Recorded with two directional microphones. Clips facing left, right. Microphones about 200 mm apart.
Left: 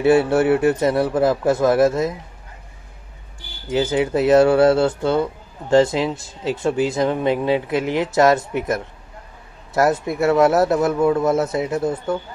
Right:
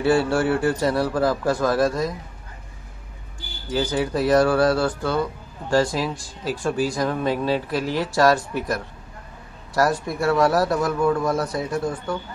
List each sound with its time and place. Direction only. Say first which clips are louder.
0.0 s speech: left 4 dB; 20° left (ahead or behind)
3.7 s speech: left 4 dB; 20° left (ahead or behind)